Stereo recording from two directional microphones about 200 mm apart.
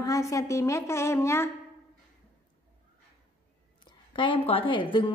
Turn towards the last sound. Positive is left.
turn(degrees=25)  # may be behind; listen again after turning